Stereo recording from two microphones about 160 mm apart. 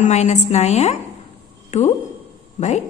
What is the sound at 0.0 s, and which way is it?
A woman's voice, 45° left (ahead or behind).